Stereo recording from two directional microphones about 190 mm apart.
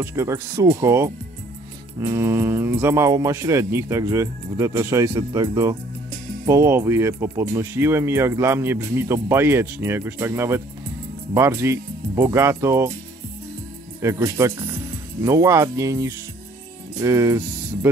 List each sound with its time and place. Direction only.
0.0 s speech: 15° right (ahead or behind)
14.0 s speech: 15° right (ahead or behind)